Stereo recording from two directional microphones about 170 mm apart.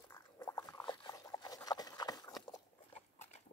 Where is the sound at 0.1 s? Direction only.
20° left (ahead or behind).